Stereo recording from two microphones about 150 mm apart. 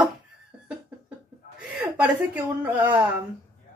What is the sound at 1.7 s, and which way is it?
A woman's voice, 10° right (ahead or behind).